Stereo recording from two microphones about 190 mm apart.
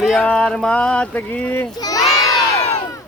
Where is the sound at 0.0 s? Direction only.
5° left (ahead or behind).